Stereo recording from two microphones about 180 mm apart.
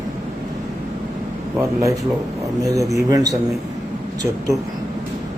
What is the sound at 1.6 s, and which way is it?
A man's voice, 15° right (ahead or behind).